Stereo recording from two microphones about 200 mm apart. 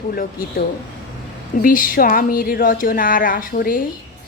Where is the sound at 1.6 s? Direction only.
45° left (ahead or behind).